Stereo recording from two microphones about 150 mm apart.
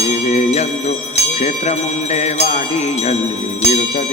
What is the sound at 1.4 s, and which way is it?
Jingle bell, 45° left (ahead or behind).